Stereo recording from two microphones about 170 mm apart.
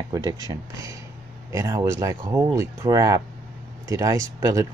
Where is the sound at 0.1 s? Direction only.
20° right (ahead or behind).